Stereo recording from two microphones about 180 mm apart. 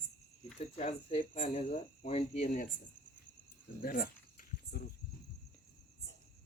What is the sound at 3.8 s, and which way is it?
Cricket, 55° left (ahead or behind).